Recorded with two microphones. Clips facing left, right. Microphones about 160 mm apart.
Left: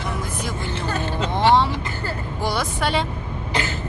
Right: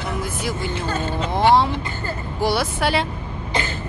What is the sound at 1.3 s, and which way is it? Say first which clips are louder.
Vehicle: right 1 dB; 35° right (ahead or behind).